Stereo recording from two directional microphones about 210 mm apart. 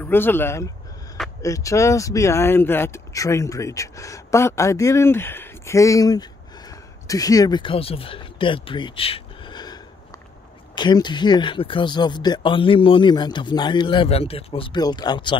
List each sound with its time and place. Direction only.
0.0 s speech: 10° left (ahead or behind)